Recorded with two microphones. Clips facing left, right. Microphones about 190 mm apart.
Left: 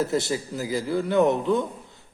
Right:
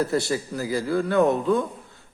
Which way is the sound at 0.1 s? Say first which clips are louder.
Right 1 dB; 20° left (ahead or behind).